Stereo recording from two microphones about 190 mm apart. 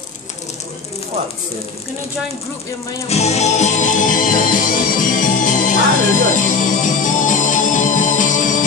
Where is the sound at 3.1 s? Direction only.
35° left (ahead or behind).